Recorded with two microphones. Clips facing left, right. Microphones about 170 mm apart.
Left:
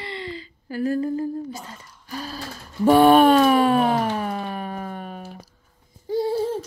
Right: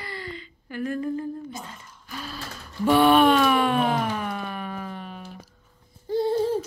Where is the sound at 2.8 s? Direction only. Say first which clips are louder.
Left 4 dB; 40° left (ahead or behind).